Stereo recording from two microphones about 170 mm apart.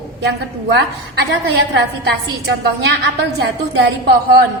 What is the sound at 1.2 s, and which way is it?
A woman's voice, 75° right (ahead or behind).